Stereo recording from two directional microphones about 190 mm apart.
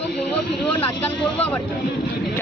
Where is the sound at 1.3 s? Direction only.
5° left (ahead or behind).